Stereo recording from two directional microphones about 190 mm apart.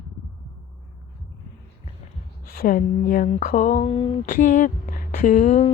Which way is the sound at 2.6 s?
45° left (ahead or behind).